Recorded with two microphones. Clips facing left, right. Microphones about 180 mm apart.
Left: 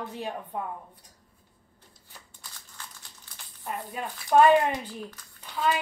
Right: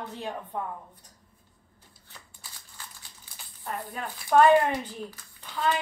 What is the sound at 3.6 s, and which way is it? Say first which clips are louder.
A woman's voice: left 1 dB; 15° left (ahead or behind).